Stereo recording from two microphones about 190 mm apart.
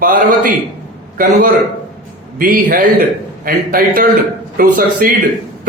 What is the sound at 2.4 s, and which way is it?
A man's voice, 45° right (ahead or behind).